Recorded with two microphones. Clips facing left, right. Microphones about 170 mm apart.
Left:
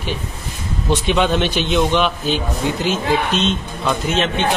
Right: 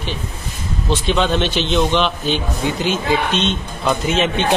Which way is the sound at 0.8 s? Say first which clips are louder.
Left 1 dB; 10° left (ahead or behind).